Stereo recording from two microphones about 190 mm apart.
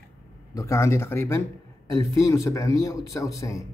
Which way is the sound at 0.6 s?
15° left (ahead or behind).